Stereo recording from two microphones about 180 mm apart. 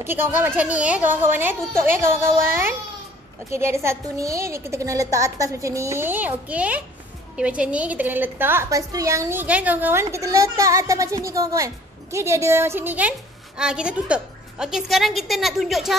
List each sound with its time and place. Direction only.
0.0 s a woman's voice: 10° right (ahead or behind)